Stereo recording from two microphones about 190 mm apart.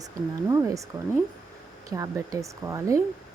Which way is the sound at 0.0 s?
15° right (ahead or behind).